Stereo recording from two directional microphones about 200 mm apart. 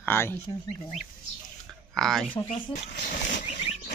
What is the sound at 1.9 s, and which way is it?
Speech, centre (ahead or behind).